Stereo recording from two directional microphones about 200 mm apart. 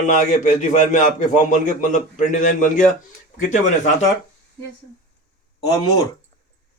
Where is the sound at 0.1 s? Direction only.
40° left (ahead or behind).